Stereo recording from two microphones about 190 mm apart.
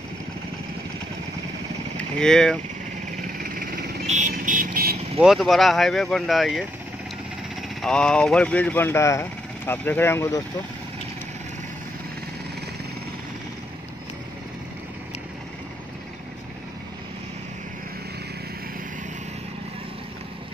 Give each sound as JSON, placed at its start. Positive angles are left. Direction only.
{"t": 2.0, "sound": "speech", "side_deg": 5}
{"t": 3.2, "sound": "vehicle", "side_deg": -50}
{"t": 5.2, "sound": "speech", "side_deg": 0}
{"t": 7.8, "sound": "speech", "side_deg": 5}